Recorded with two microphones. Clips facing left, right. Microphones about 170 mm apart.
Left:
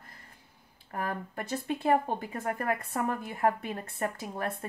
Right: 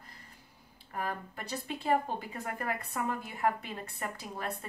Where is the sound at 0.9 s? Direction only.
50° left (ahead or behind).